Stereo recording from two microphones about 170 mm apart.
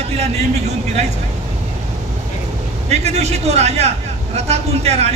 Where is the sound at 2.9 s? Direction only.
40° right (ahead or behind).